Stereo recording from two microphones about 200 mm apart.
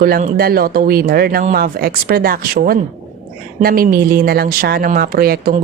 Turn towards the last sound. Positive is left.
turn(degrees=-50)  # may be behind; listen again after turning